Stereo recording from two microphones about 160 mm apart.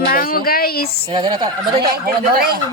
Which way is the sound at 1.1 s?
30° right (ahead or behind).